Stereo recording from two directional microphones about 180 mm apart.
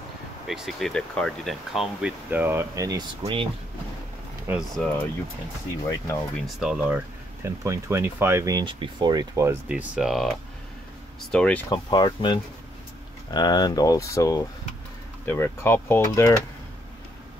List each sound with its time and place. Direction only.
0.5 s speech: centre (ahead or behind); by 3.4 s 25° right (ahead or behind)
4.5 s speech: 5° right (ahead or behind)
5.9 s speech: 15° left (ahead or behind)
6.4 s speech: 5° right (ahead or behind)
7.4 s speech: 15° right (ahead or behind); by 11.6 s 5° left (ahead or behind)
11.7 s speech: 25° left (ahead or behind)